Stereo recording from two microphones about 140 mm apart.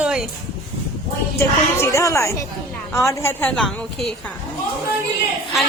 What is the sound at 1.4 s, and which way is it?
Speech, 20° left (ahead or behind).